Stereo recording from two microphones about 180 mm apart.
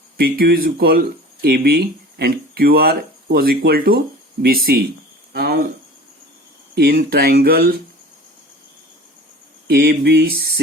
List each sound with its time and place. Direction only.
0.2 s speech: 60° right (ahead or behind)
6.7 s speech: 60° right (ahead or behind)
9.6 s speech: 55° right (ahead or behind)